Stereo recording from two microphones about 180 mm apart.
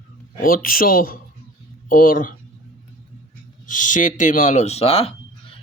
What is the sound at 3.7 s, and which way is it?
Speech, 45° left (ahead or behind).